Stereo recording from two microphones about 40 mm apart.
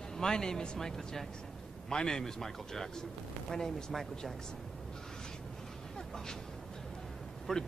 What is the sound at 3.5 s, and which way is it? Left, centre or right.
Speech, centre.